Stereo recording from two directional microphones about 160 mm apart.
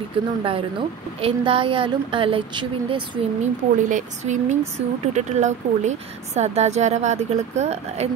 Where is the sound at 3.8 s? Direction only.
50° right (ahead or behind).